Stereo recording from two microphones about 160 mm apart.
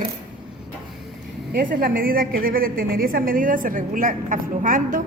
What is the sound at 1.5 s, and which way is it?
A woman's voice, 65° right (ahead or behind).